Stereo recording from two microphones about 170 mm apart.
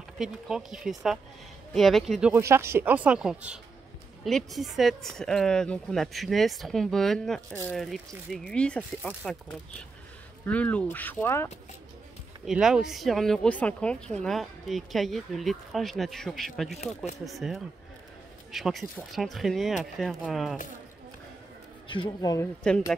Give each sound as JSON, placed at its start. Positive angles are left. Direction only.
{"t": 0.2, "sound": "speech", "side_deg": -5}
{"t": 2.4, "sound": "speech", "side_deg": -15}
{"t": 12.4, "sound": "speech", "side_deg": -5}
{"t": 21.8, "sound": "speech", "side_deg": 30}
{"t": 22.6, "sound": "speech", "side_deg": 5}